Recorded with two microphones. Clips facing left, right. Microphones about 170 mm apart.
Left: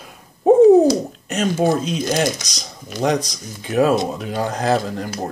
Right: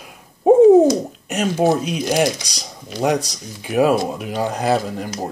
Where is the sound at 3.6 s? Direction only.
15° right (ahead or behind).